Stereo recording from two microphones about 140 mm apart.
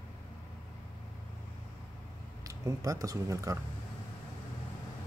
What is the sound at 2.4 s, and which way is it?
Speech, 25° right (ahead or behind).